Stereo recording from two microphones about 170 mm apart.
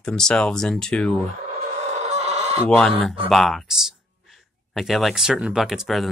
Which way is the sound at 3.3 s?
Centre (ahead or behind).